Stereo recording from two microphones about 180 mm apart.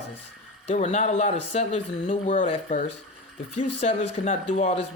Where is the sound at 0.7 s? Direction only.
40° left (ahead or behind).